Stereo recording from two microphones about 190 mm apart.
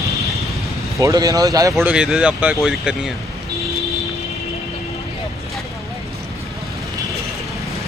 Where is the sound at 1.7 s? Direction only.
5° right (ahead or behind).